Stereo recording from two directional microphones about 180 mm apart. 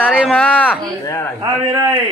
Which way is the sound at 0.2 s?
5° left (ahead or behind).